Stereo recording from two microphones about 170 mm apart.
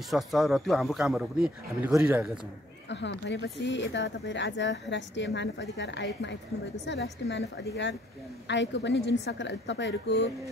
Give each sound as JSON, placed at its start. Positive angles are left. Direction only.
{"t": 0.1, "sound": "speech", "side_deg": 0}
{"t": 2.9, "sound": "speech", "side_deg": 90}